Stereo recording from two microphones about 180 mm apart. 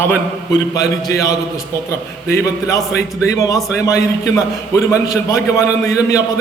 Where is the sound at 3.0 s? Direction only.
20° left (ahead or behind).